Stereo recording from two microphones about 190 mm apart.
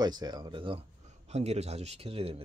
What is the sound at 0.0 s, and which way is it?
Speech, 20° right (ahead or behind).